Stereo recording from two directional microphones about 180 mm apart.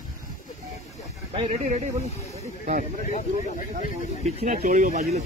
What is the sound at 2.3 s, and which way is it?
Snake, 45° right (ahead or behind).